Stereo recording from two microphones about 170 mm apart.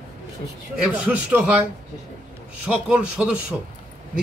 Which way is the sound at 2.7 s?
5° right (ahead or behind).